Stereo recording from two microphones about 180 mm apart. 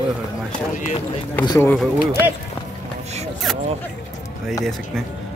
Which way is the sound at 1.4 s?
20° left (ahead or behind).